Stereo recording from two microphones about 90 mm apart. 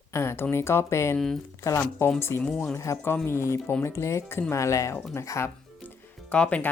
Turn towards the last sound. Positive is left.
turn(degrees=15)  # may be behind; listen again after turning